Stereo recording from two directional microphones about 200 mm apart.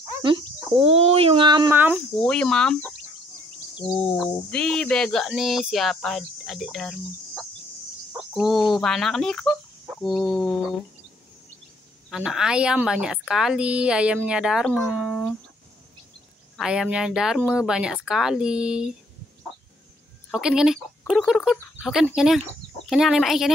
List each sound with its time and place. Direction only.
0.2 s speech: 25° right (ahead or behind)
2.2 s speech: 5° left (ahead or behind)
4.0 s speech: 5° left (ahead or behind)
12.1 s speech: 5° right (ahead or behind)
16.5 s speech: centre (ahead or behind)
20.2 s speech: centre (ahead or behind)